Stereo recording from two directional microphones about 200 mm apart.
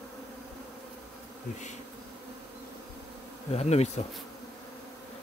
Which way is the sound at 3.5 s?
30° left (ahead or behind).